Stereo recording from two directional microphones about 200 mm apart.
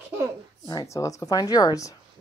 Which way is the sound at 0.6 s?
15° left (ahead or behind).